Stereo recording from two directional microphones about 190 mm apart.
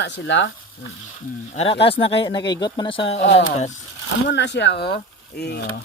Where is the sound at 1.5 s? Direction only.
30° left (ahead or behind).